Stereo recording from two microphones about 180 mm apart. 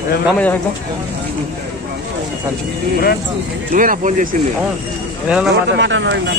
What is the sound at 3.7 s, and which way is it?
Speech, 50° right (ahead or behind).